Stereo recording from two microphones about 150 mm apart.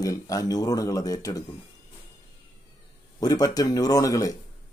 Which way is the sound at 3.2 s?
25° left (ahead or behind).